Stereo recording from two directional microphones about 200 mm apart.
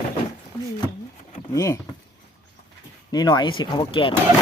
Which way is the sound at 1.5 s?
15° left (ahead or behind).